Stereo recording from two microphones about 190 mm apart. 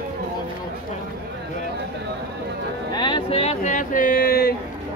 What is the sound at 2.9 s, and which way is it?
Speech, 25° left (ahead or behind).